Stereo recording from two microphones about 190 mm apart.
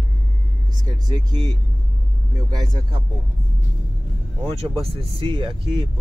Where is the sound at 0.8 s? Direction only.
20° right (ahead or behind).